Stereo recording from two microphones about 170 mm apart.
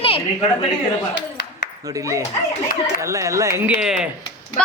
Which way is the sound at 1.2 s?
90° left.